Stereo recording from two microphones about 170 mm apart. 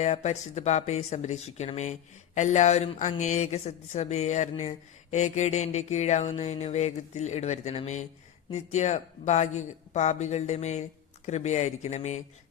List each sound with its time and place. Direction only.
0.0 s speech: 40° left (ahead or behind)